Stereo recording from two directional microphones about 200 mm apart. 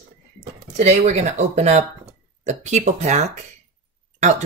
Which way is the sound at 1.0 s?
35° right (ahead or behind).